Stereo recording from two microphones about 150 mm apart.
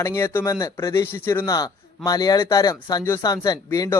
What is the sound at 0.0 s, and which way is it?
Speech, 15° left (ahead or behind).